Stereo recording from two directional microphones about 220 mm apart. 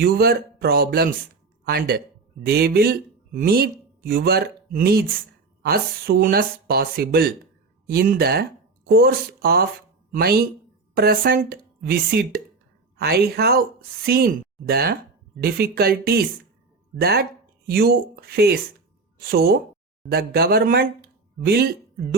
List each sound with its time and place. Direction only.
0.0 s speech: 45° right (ahead or behind)